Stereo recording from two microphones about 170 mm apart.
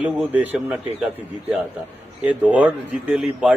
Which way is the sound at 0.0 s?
10° right (ahead or behind).